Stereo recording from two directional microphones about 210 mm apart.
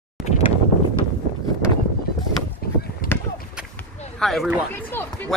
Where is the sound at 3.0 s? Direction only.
40° left (ahead or behind).